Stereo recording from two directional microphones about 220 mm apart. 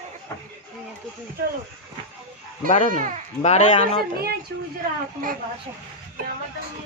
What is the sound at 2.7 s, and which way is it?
Speech, 30° left (ahead or behind).